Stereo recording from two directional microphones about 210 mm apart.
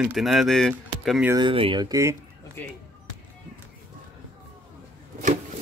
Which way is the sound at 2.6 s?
10° left (ahead or behind).